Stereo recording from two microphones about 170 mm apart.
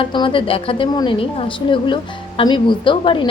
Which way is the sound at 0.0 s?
30° left (ahead or behind).